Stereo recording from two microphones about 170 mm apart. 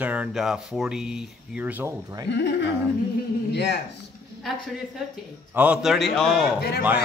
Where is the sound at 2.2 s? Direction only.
90° left.